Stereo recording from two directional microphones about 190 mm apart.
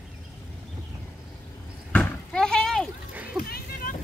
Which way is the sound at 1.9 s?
5° left (ahead or behind).